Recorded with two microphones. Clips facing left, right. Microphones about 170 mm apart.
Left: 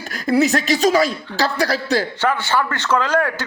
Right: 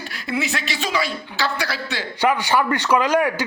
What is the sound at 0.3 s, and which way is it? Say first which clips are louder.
A man's voice: left 9 dB; 40° left (ahead or behind).